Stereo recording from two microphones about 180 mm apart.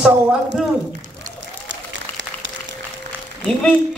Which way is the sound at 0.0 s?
5° right (ahead or behind).